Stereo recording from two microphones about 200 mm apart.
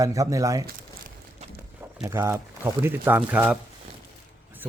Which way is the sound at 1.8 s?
10° right (ahead or behind).